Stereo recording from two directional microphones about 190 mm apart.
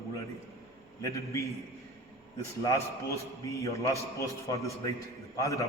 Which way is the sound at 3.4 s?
15° left (ahead or behind).